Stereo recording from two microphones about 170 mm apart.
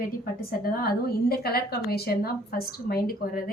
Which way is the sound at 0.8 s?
65° left (ahead or behind).